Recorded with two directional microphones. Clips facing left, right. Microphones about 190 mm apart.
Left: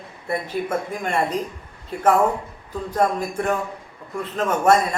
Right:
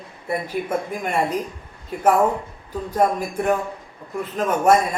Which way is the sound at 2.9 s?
10° right (ahead or behind).